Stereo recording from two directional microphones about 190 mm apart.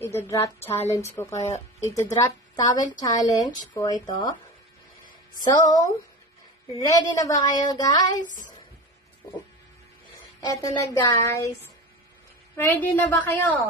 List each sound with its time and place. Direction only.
0.0 s a woman's voice: 15° left (ahead or behind)
1.3 s speech: 35° left (ahead or behind)
1.9 s a woman's voice: 15° left (ahead or behind)
5.4 s a woman's voice: 20° left (ahead or behind)
8.2 s a woman's voice: 40° left (ahead or behind)
10.4 s a woman's voice: 15° left (ahead or behind)
12.5 s a woman's voice: 10° left (ahead or behind)